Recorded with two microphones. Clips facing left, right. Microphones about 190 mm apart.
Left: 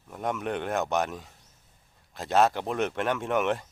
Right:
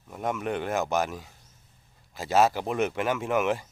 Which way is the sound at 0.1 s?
Centre (ahead or behind).